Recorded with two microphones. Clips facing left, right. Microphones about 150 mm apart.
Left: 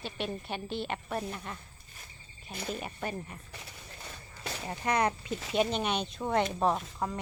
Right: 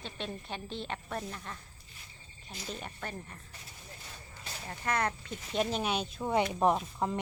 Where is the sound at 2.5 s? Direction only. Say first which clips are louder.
Left 5 dB; 60° left (ahead or behind).